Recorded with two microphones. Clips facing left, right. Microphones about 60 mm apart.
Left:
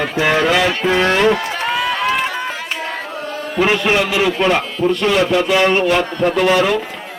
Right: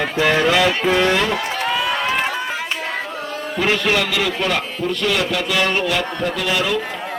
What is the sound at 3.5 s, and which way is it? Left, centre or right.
Speech, left.